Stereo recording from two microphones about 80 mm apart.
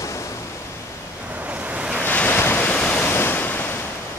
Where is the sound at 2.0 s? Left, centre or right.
Left.